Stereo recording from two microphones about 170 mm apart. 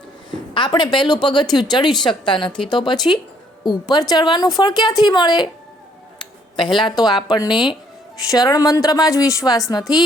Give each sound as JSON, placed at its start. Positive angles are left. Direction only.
{"t": 0.3, "sound": "a woman's voice", "side_deg": 25}
{"t": 6.6, "sound": "a woman's voice", "side_deg": 30}